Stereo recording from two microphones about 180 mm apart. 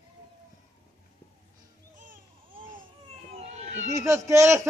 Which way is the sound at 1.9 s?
50° right (ahead or behind).